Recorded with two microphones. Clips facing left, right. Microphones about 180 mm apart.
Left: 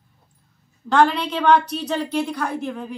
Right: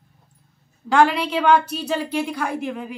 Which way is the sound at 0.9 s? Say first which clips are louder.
Even; 10° right (ahead or behind).